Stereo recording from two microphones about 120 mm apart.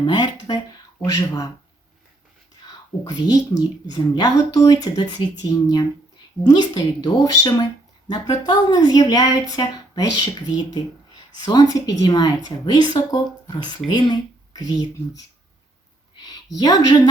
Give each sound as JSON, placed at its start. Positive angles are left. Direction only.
{"t": 0.0, "sound": "a woman's voice", "side_deg": 40}
{"t": 3.0, "sound": "a woman's voice", "side_deg": 30}
{"t": 11.1, "sound": "a woman's voice", "side_deg": 35}
{"t": 16.6, "sound": "a woman's voice", "side_deg": 35}